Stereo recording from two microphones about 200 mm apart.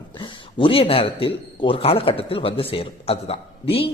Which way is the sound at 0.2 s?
25° left (ahead or behind).